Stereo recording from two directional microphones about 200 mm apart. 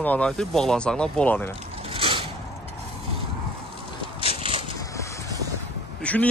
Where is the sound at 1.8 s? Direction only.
25° right (ahead or behind).